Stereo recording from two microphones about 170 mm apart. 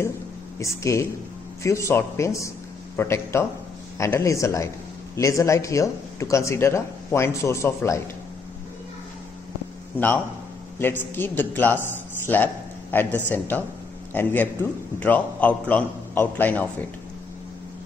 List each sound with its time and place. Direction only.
0.6 s speech: 20° left (ahead or behind)
9.9 s speech: 10° left (ahead or behind)